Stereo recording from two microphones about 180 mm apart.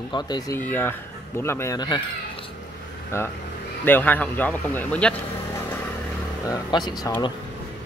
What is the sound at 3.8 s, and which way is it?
Speech, 10° left (ahead or behind).